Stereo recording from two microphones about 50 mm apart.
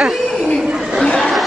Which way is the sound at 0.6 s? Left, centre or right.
Centre.